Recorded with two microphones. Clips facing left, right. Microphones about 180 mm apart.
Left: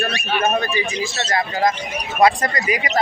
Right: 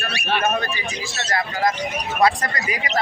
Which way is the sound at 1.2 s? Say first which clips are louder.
Left 2 dB; 25° left (ahead or behind).